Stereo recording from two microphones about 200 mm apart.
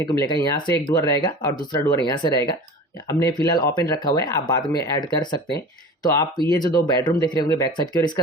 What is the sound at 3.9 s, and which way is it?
Speech, 20° left (ahead or behind).